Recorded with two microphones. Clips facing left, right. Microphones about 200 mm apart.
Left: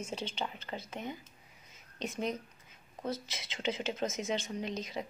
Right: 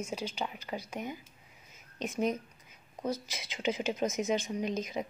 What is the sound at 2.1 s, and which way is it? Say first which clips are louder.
A woman's voice: right 4 dB; 20° right (ahead or behind).